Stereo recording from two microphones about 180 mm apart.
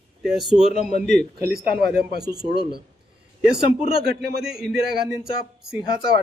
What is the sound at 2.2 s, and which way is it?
Speech, 20° right (ahead or behind).